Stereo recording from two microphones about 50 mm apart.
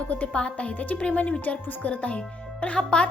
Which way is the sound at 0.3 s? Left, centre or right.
Left.